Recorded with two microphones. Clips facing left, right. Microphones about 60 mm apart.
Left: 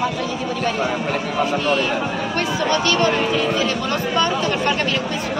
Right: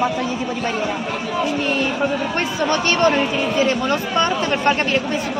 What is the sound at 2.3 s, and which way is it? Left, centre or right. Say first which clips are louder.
Speech: even; right.